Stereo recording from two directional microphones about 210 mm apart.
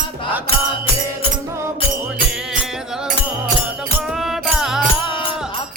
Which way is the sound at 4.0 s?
Centre (ahead or behind).